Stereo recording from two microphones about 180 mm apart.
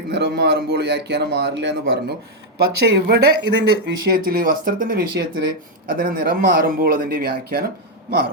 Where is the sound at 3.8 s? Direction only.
55° right (ahead or behind).